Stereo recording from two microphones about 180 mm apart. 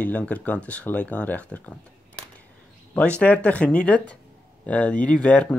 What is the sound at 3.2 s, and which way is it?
Speech, 5° left (ahead or behind).